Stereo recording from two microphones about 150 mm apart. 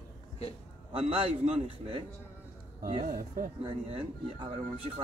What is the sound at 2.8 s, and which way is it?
Speech, 60° right (ahead or behind).